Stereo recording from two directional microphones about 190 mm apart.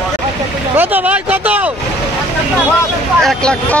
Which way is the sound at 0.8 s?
10° right (ahead or behind).